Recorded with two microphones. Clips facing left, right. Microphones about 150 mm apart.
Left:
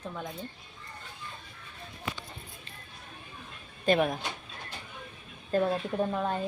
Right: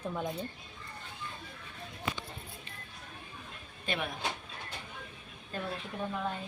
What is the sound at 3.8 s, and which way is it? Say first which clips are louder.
Speech: left 11 dB; 40° left (ahead or behind).